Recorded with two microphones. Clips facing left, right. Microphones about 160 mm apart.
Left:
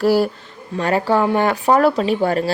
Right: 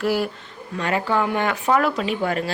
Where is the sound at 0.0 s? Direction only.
35° left (ahead or behind).